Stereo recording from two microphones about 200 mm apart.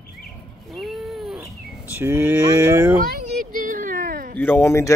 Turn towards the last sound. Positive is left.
turn(degrees=15)  # may be behind; listen again after turning